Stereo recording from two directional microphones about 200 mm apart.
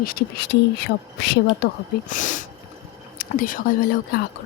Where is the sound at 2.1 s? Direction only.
40° left (ahead or behind).